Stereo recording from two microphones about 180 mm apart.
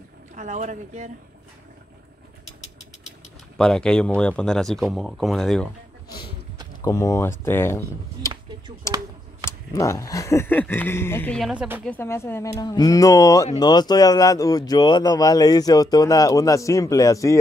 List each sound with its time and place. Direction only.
0.4 s speech: 40° right (ahead or behind)
3.5 s speech: 5° left (ahead or behind)
6.8 s speech: 15° left (ahead or behind)
8.8 s a sound: 15° left (ahead or behind)
9.5 s speech: 15° left (ahead or behind)